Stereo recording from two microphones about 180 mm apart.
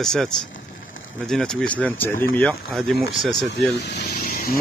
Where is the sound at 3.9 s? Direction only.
70° left (ahead or behind).